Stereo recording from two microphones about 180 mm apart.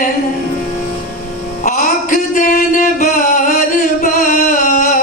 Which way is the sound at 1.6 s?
50° left (ahead or behind).